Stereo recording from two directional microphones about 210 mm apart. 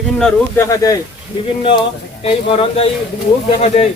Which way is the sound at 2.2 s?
30° left (ahead or behind).